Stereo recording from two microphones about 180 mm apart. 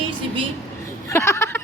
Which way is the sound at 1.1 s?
15° left (ahead or behind).